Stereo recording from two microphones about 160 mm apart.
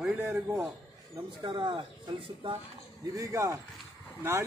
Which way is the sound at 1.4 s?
30° right (ahead or behind).